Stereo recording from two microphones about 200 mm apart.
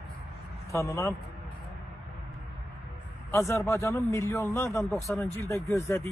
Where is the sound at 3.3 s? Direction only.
15° left (ahead or behind).